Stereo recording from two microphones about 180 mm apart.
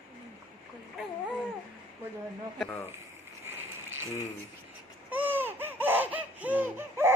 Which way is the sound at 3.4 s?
10° right (ahead or behind).